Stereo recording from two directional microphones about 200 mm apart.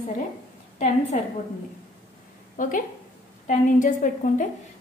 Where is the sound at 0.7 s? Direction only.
35° left (ahead or behind).